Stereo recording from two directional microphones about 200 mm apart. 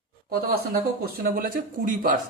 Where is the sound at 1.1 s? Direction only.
45° right (ahead or behind).